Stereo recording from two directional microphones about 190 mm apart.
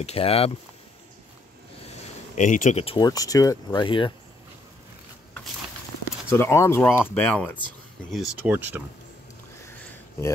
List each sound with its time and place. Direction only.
0.0 s speech: 30° left (ahead or behind)
2.3 s speech: 40° left (ahead or behind); by 4.1 s 25° left (ahead or behind)
6.2 s speech: 10° left (ahead or behind)
8.1 s speech: centre (ahead or behind)